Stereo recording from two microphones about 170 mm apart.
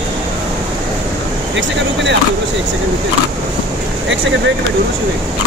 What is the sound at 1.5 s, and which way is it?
Speech, 90° right.